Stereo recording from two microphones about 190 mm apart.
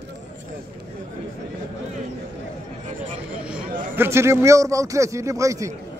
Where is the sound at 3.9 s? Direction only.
10° right (ahead or behind).